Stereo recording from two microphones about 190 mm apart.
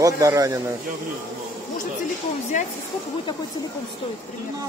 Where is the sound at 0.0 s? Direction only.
15° right (ahead or behind).